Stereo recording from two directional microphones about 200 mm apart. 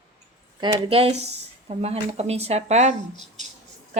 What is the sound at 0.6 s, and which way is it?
Speech, 25° right (ahead or behind).